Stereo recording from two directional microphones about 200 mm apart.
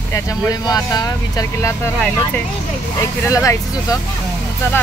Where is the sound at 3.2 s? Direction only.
15° left (ahead or behind).